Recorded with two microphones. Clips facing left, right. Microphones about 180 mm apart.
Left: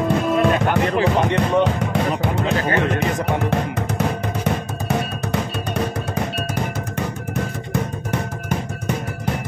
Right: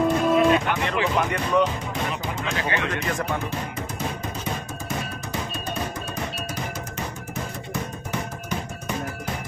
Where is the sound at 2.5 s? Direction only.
40° left (ahead or behind).